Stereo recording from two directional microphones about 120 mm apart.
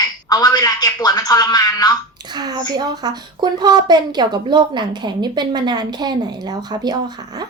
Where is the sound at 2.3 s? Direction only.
35° right (ahead or behind).